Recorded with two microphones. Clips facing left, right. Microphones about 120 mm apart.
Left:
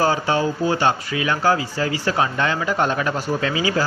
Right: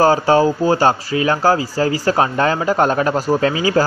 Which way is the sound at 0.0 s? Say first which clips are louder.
Right 7 dB; 40° right (ahead or behind).